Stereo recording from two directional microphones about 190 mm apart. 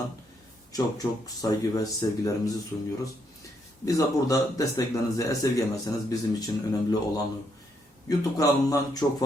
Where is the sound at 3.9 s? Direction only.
15° left (ahead or behind).